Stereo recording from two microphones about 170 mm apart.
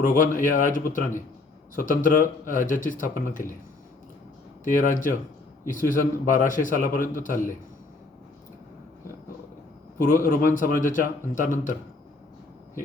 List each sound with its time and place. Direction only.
0.0 s a man's voice: 55° left (ahead or behind)
4.6 s a man's voice: 50° left (ahead or behind)
10.2 s a man's voice: 55° left (ahead or behind)